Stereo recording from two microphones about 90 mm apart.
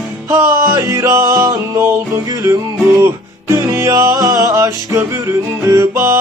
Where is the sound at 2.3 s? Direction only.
45° right (ahead or behind).